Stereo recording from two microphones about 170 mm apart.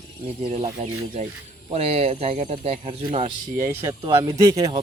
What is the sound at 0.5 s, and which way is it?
Speech, 40° right (ahead or behind).